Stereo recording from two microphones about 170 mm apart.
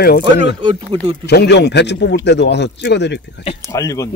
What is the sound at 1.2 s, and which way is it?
A man's voice, 80° left.